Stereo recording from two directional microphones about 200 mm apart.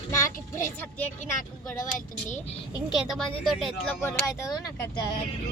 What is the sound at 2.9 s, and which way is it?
Speech, centre (ahead or behind).